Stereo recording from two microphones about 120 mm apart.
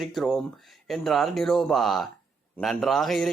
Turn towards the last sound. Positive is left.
turn(degrees=0)  # may be behind; listen again after turning